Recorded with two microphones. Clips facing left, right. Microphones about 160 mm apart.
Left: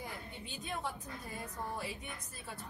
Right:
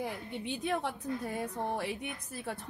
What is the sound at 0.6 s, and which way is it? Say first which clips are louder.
A woman's voice: right 6 dB; 70° right (ahead or behind).